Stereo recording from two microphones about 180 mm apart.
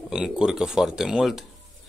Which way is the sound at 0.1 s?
5° right (ahead or behind).